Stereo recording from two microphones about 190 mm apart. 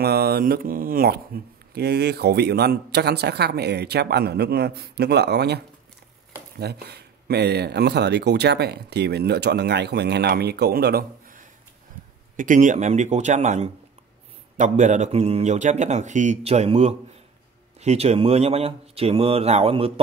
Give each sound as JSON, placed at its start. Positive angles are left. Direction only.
{"t": 0.0, "sound": "speech", "side_deg": -55}
{"t": 6.6, "sound": "speech", "side_deg": -60}